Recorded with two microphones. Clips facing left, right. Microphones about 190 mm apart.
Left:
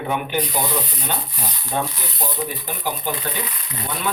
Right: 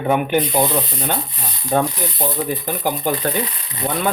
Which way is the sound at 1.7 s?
50° right (ahead or behind).